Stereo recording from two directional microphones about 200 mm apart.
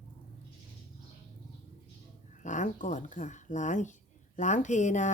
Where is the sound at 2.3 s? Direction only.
40° left (ahead or behind).